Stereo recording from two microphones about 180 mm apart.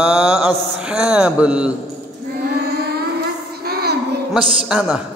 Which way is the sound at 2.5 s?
60° right (ahead or behind).